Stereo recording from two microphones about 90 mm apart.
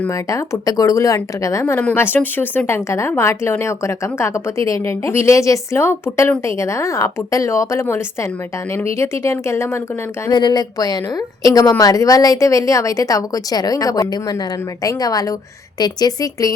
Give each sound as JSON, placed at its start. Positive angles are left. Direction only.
{"t": 0.1, "sound": "speech", "side_deg": 35}
{"t": 2.0, "sound": "speech", "side_deg": 20}
{"t": 10.3, "sound": "a woman's voice", "side_deg": 50}